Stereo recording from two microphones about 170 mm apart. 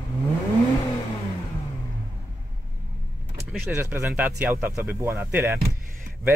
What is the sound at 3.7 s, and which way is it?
Speech, 10° right (ahead or behind).